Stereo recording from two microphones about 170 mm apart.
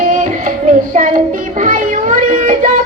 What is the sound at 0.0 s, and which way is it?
Music, 50° right (ahead or behind).